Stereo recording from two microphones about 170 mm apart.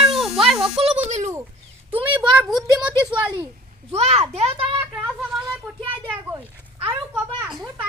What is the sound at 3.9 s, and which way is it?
Speech, 35° right (ahead or behind).